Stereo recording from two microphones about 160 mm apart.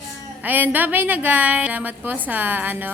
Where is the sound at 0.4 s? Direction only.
10° right (ahead or behind).